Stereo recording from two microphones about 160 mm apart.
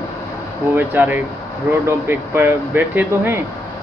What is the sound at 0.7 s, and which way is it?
Speech, 10° right (ahead or behind).